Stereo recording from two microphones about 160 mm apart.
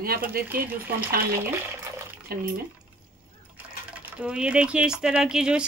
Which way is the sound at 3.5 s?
10° right (ahead or behind).